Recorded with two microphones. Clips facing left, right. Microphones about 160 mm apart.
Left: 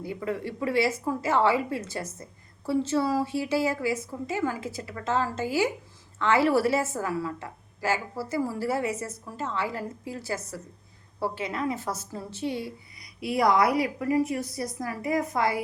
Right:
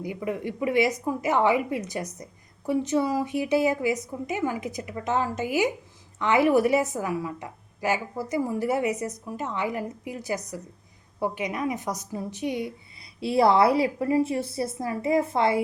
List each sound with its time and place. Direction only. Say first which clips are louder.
0.0 s a woman's voice: right 1 dB; 15° right (ahead or behind)
13.1 s a woman's voice: right 3 dB; 30° right (ahead or behind)